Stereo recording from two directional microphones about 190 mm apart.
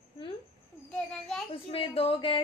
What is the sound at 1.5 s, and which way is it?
Speech, 30° left (ahead or behind).